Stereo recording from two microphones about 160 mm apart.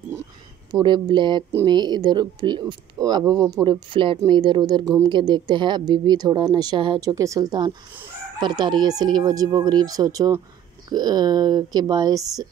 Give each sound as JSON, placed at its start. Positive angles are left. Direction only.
{"t": 0.7, "sound": "speech", "side_deg": -30}